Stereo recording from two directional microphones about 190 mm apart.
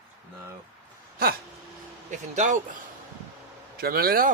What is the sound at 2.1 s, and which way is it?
Speech, 40° right (ahead or behind).